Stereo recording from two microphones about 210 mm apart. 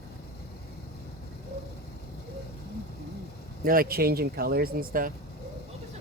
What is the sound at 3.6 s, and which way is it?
Speech, 45° right (ahead or behind).